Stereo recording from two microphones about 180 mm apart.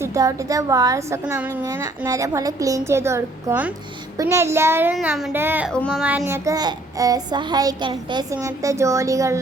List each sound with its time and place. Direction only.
0.0 s a child's voice: 20° right (ahead or behind)
5.7 s speech: 5° left (ahead or behind)
6.0 s a child's voice: 10° right (ahead or behind)